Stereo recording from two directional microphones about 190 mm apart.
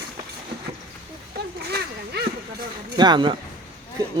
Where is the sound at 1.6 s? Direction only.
55° right (ahead or behind).